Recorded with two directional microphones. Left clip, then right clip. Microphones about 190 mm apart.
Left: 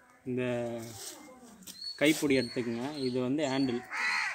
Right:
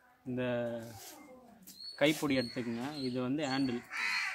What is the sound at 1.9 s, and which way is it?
Speech, 20° right (ahead or behind).